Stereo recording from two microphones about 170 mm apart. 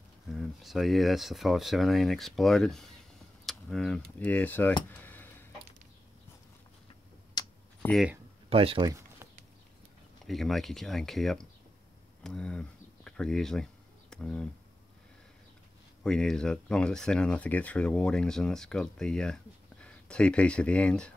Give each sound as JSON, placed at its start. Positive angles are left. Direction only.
{"t": 0.3, "sound": "speech", "side_deg": 0}
{"t": 4.8, "sound": "a sound", "side_deg": 10}
{"t": 7.4, "sound": "typing", "side_deg": 25}
{"t": 8.5, "sound": "speech", "side_deg": -35}
{"t": 10.2, "sound": "speech", "side_deg": 0}
{"t": 16.0, "sound": "speech", "side_deg": 5}